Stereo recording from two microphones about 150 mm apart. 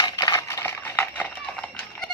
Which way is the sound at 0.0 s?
30° left (ahead or behind).